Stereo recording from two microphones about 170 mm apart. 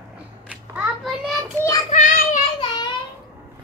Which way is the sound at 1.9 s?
45° left (ahead or behind).